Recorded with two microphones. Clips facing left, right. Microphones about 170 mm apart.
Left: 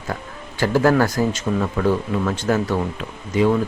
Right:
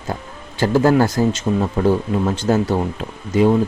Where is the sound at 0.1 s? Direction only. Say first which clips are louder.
Right 2 dB; 25° right (ahead or behind).